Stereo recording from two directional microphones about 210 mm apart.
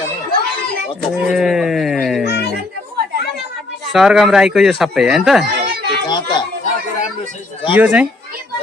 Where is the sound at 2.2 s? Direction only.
50° left (ahead or behind).